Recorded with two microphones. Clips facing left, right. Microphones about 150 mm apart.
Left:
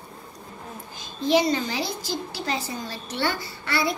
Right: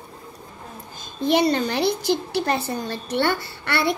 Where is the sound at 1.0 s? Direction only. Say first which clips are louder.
Right 2 dB; 55° right (ahead or behind).